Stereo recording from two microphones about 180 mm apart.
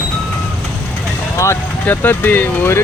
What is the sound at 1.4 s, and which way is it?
Speech, 15° left (ahead or behind).